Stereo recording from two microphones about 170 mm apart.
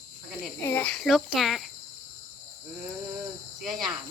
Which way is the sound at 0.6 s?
10° left (ahead or behind).